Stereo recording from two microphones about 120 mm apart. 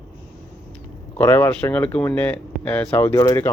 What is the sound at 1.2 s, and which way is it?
Speech, 20° left (ahead or behind).